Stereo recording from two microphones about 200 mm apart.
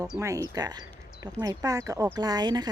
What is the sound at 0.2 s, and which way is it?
Speech, 15° right (ahead or behind).